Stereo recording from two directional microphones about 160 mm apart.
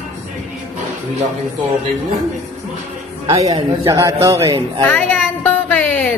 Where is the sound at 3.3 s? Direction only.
20° right (ahead or behind).